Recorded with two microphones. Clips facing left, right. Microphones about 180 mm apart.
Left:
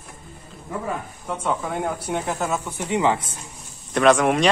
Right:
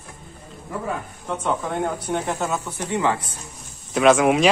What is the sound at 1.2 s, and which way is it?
Speech, centre (ahead or behind).